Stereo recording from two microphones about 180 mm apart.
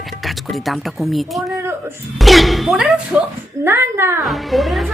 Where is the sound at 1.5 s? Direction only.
15° right (ahead or behind).